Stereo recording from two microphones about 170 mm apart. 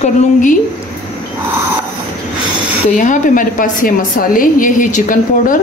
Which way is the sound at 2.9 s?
50° left (ahead or behind).